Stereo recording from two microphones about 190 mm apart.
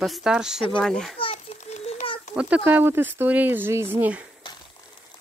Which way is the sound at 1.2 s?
35° left (ahead or behind).